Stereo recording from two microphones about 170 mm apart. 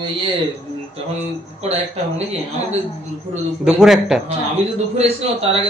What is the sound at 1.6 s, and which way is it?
Speech, 40° right (ahead or behind).